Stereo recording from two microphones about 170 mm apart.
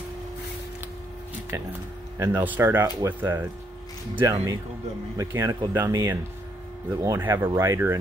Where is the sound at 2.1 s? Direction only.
15° right (ahead or behind).